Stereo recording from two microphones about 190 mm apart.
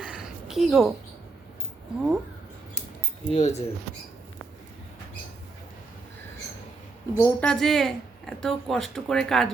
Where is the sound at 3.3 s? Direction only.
35° left (ahead or behind).